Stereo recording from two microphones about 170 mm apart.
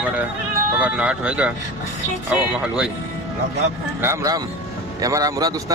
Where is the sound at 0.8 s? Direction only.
5° right (ahead or behind).